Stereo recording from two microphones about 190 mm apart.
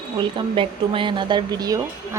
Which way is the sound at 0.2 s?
25° right (ahead or behind).